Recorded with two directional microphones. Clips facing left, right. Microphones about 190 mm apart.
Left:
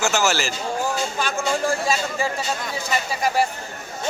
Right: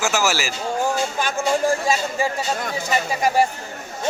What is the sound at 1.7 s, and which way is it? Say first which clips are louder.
Speech: right 2 dB; 40° right (ahead or behind).